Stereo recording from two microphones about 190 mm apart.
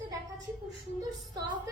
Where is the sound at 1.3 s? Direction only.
20° right (ahead or behind).